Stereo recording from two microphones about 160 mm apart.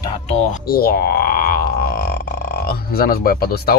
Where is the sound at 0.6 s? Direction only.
70° left (ahead or behind).